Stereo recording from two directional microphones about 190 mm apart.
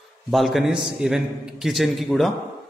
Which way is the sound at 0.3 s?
Centre (ahead or behind).